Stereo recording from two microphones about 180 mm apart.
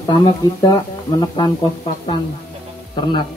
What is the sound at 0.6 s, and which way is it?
Speech, 25° left (ahead or behind).